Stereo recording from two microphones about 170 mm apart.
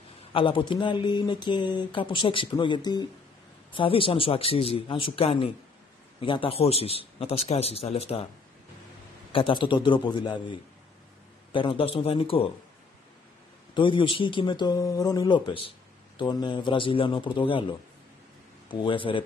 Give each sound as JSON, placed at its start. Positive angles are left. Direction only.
{"t": 0.3, "sound": "a man's voice", "side_deg": 30}
{"t": 9.3, "sound": "a man's voice", "side_deg": 30}
{"t": 13.7, "sound": "speech", "side_deg": 30}